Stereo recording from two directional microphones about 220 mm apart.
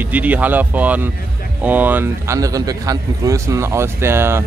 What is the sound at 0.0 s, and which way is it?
Speech, 5° right (ahead or behind).